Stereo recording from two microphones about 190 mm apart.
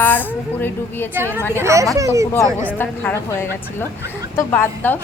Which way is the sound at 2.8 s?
10° left (ahead or behind).